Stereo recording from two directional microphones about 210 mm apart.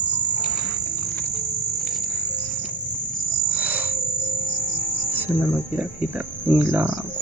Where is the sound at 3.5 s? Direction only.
10° right (ahead or behind).